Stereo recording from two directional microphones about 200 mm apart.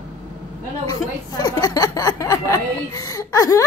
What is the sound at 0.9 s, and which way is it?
Speech, 20° left (ahead or behind).